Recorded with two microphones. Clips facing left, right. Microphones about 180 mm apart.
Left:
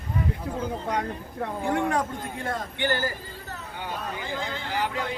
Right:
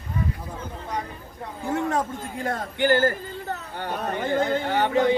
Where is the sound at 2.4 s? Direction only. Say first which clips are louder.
Right 6 dB; 50° right (ahead or behind).